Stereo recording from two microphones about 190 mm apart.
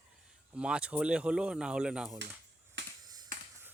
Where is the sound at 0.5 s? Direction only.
5° right (ahead or behind).